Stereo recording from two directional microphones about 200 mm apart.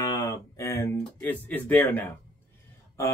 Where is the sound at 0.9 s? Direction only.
10° left (ahead or behind).